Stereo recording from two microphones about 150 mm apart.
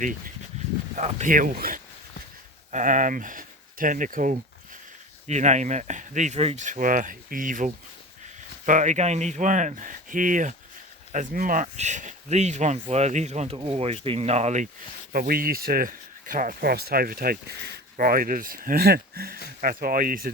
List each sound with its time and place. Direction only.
0.9 s speech: 55° right (ahead or behind); by 1.8 s 70° right (ahead or behind)
2.7 s speech: 60° right (ahead or behind)
6.7 s speech: 60° right (ahead or behind)
15.1 s speech: 80° right
17.9 s speech: 65° right (ahead or behind)